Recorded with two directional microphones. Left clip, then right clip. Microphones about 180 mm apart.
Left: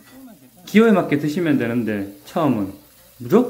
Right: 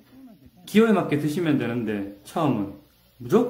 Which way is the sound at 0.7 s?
20° left (ahead or behind).